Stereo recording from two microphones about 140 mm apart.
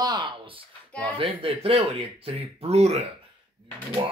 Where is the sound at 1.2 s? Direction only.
40° right (ahead or behind).